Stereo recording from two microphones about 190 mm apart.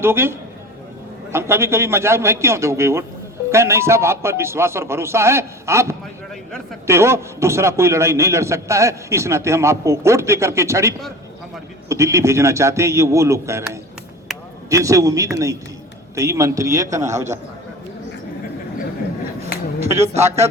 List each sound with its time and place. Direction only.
0.0 s a man's voice: 10° right (ahead or behind)
14.7 s a man's voice: 15° right (ahead or behind)
20.2 s a man's voice: 15° right (ahead or behind)